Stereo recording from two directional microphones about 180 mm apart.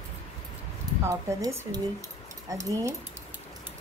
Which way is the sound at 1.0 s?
15° right (ahead or behind).